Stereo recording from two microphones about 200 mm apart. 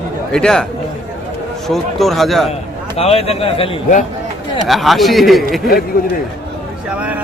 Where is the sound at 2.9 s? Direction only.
30° left (ahead or behind).